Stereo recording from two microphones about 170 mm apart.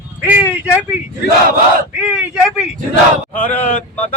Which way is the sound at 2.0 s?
5° right (ahead or behind).